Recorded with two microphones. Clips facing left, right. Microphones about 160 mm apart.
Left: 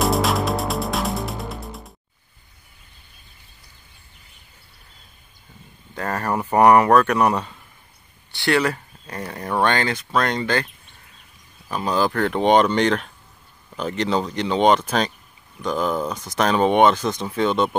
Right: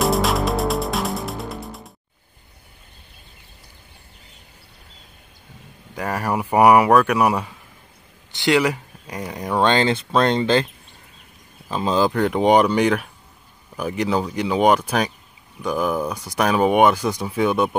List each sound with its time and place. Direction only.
0.0 s music: centre (ahead or behind)
5.9 s speech: 10° right (ahead or behind)
11.7 s speech: 20° right (ahead or behind)